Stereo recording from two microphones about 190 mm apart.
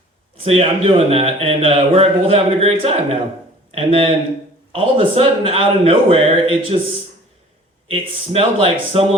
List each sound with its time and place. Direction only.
0.3 s a man's voice: 30° right (ahead or behind)
7.9 s a man's voice: 30° right (ahead or behind)